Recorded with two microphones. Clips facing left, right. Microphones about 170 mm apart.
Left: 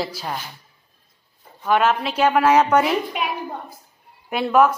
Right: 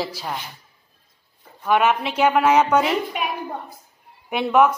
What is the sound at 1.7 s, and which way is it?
Speech, 10° right (ahead or behind).